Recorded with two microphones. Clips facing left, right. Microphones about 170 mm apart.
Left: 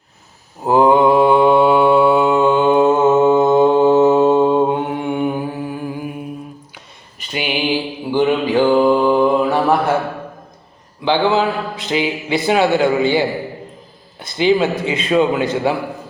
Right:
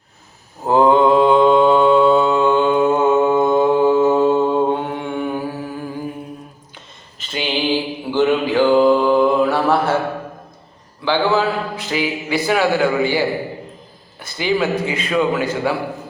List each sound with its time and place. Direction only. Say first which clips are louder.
0.6 s mantra: left 1 dB; 15° left (ahead or behind)
7.2 s a sound: left 1 dB; 10° left (ahead or behind)
8.1 s mantra: left 1 dB; 15° left (ahead or behind)
11.0 s speech: left 2 dB; 20° left (ahead or behind)